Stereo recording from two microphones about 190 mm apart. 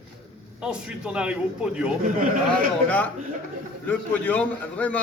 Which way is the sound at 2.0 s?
45° right (ahead or behind).